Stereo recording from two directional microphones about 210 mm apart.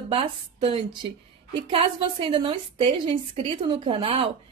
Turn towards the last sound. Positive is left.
turn(degrees=-25)  # may be behind; listen again after turning